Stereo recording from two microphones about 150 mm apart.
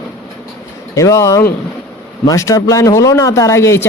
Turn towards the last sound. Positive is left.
turn(degrees=20)  # may be behind; listen again after turning